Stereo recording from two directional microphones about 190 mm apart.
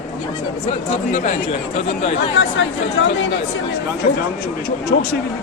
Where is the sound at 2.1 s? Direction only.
70° left (ahead or behind).